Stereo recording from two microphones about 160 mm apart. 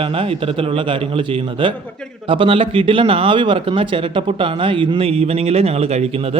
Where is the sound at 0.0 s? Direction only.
35° right (ahead or behind).